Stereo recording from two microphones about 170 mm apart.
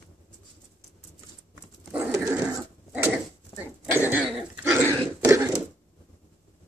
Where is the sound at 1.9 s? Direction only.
15° right (ahead or behind).